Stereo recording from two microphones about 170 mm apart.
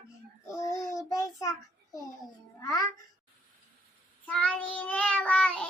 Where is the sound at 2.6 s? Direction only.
20° left (ahead or behind).